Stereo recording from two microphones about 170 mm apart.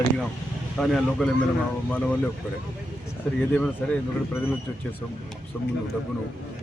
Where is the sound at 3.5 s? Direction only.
5° left (ahead or behind).